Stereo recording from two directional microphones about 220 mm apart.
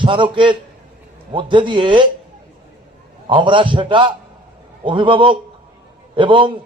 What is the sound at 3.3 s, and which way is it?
A man's voice, 20° right (ahead or behind).